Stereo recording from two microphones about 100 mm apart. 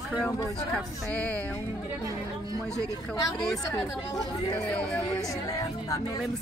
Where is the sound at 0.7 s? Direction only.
15° left (ahead or behind).